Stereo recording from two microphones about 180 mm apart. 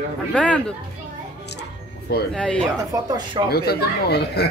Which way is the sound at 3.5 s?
60° left (ahead or behind).